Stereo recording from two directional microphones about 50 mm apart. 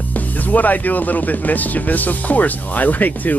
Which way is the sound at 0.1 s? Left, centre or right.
Left.